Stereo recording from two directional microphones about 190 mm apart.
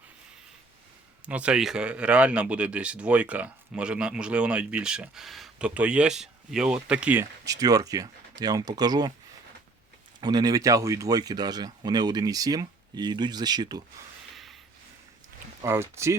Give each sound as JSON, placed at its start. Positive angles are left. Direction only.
{"t": 1.2, "sound": "speech", "side_deg": -5}
{"t": 10.2, "sound": "speech", "side_deg": -20}
{"t": 15.6, "sound": "speech", "side_deg": -15}